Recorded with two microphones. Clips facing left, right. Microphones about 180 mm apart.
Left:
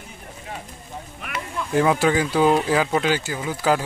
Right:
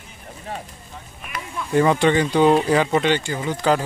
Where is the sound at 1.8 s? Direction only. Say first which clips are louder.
Right 2 dB; 5° left (ahead or behind).